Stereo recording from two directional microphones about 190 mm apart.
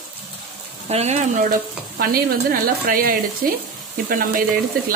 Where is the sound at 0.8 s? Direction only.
35° right (ahead or behind).